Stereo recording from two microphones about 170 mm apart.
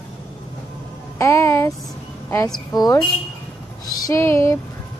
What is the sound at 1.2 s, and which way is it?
Music, 15° left (ahead or behind).